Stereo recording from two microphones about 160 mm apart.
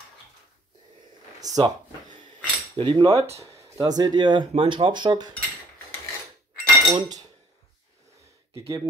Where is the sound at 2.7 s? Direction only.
30° right (ahead or behind).